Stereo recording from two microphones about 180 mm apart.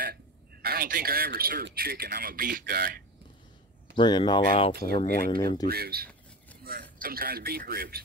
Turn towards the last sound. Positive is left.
turn(degrees=-55)  # may be behind; listen again after turning